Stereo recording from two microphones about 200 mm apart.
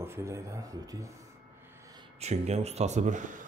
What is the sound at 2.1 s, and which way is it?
Speech, 35° right (ahead or behind).